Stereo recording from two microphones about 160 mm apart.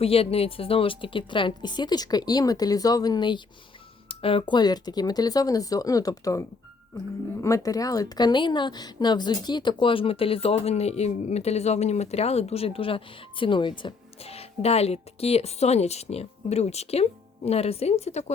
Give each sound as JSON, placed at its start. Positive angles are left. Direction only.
{"t": 0.0, "sound": "speech", "side_deg": 35}
{"t": 7.4, "sound": "a woman's voice", "side_deg": 20}